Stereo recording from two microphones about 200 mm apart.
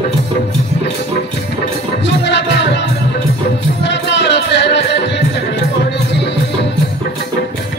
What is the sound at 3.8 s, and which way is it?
Music, 60° left (ahead or behind).